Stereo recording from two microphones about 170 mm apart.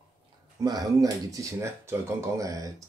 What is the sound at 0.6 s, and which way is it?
Speech, 20° right (ahead or behind).